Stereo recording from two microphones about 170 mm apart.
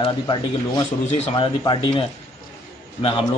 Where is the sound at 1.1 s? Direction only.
40° left (ahead or behind).